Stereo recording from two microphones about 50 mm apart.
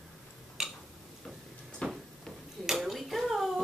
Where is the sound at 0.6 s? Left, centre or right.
Centre.